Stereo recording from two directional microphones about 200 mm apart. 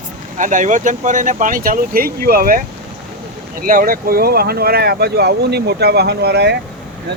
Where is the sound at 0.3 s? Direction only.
40° right (ahead or behind).